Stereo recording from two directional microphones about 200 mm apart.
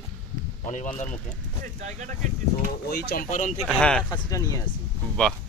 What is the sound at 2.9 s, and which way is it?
Speech, 50° left (ahead or behind).